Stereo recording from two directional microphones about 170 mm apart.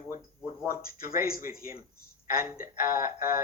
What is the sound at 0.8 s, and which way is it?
Speech, 60° left (ahead or behind).